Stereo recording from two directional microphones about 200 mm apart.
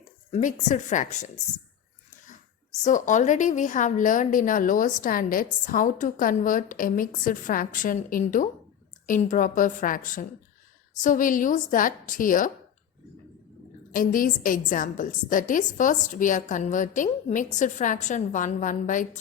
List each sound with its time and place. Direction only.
0.3 s a woman's voice: 35° left (ahead or behind)
2.8 s a woman's voice: 35° left (ahead or behind)
13.9 s a woman's voice: 45° left (ahead or behind)